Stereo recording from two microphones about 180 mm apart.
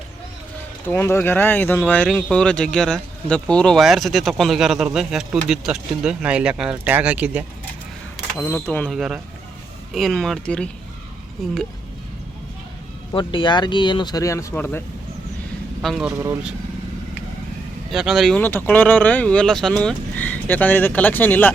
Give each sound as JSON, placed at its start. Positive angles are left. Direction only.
{"t": 0.9, "sound": "speech", "side_deg": 15}
{"t": 8.4, "sound": "speech", "side_deg": 10}
{"t": 8.9, "sound": "speech", "side_deg": -5}
{"t": 13.1, "sound": "speech", "side_deg": 25}
{"t": 15.8, "sound": "speech", "side_deg": 0}
{"t": 16.0, "sound": "speech", "side_deg": -15}
{"t": 17.9, "sound": "speech", "side_deg": 0}